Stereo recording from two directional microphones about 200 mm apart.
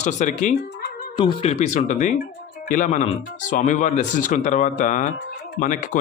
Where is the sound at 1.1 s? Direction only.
25° left (ahead or behind).